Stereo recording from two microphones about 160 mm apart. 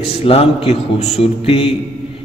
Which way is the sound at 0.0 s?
35° left (ahead or behind).